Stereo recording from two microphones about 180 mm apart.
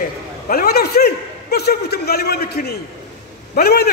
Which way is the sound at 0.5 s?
55° left (ahead or behind).